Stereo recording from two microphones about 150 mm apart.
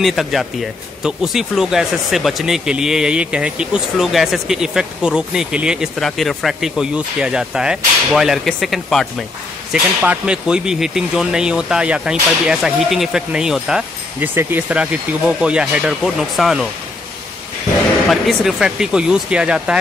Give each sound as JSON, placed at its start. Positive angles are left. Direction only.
{"t": 0.0, "sound": "speech", "side_deg": 0}
{"t": 18.1, "sound": "speech", "side_deg": 0}